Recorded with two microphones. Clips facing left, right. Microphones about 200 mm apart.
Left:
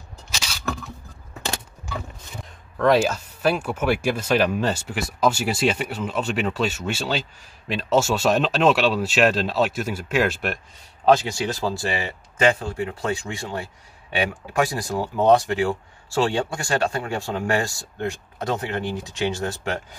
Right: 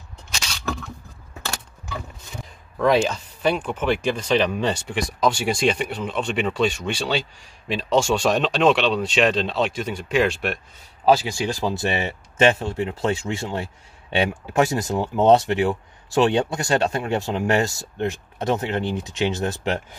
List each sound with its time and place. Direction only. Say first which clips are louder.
0.3 s single-lens reflex camera: even; centre (ahead or behind)
2.8 s speech: even; 5° left (ahead or behind)
11.6 s speech: right 2 dB; 20° right (ahead or behind)